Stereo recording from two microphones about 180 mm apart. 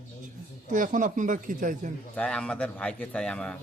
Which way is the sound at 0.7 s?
45° right (ahead or behind).